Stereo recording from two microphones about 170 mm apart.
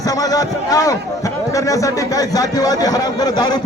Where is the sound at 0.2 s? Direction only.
20° left (ahead or behind).